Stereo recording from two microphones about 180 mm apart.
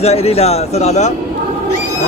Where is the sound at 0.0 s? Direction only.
35° left (ahead or behind).